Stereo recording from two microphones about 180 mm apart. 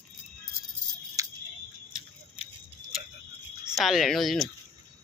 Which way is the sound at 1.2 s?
20° right (ahead or behind).